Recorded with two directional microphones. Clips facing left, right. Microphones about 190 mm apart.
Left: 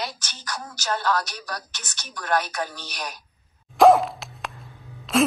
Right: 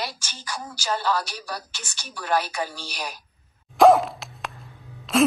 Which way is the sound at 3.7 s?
Centre (ahead or behind).